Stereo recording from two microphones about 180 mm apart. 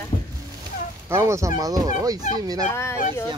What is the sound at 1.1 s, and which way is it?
Speech, 15° right (ahead or behind).